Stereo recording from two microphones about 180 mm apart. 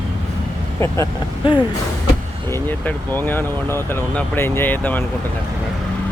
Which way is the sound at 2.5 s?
10° left (ahead or behind).